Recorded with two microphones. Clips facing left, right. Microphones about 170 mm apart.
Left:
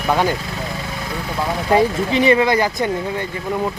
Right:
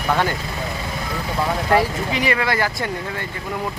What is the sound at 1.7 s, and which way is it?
Speech, 25° left (ahead or behind).